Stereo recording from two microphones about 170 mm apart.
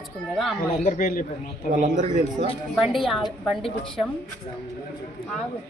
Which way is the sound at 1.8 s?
45° right (ahead or behind).